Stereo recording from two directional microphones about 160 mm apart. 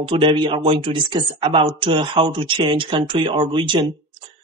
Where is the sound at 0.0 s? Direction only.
35° right (ahead or behind).